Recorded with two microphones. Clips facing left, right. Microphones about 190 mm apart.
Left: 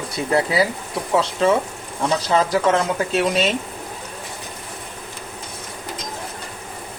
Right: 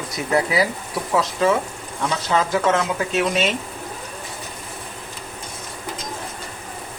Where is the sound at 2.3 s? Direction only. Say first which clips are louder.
Left 1 dB; 35° left (ahead or behind).